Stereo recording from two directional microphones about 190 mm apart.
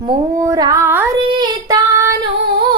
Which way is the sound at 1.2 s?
25° right (ahead or behind).